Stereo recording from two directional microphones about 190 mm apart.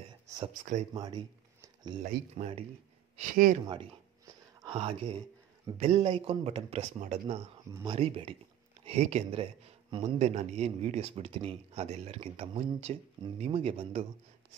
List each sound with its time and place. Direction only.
0.9 s speech: 20° right (ahead or behind)
2.0 s a man's voice: 35° right (ahead or behind)
3.2 s speech: 45° right (ahead or behind)
4.6 s a man's voice: 30° right (ahead or behind)
7.7 s a man's voice: 25° right (ahead or behind)